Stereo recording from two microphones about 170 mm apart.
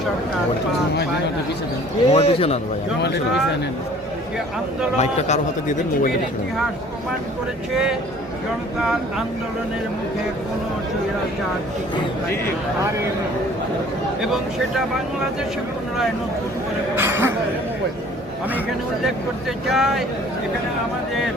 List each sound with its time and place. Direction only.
2.0 s a man's voice: 35° left (ahead or behind)
4.9 s a man's voice: 45° left (ahead or behind)
7.7 s speech: 5° right (ahead or behind)
16.9 s speech: 15° right (ahead or behind)
19.6 s speech: centre (ahead or behind)